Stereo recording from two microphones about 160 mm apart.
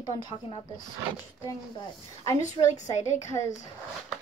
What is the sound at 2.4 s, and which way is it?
Speech, 50° left (ahead or behind).